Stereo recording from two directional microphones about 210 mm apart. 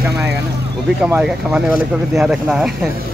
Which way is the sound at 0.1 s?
50° right (ahead or behind).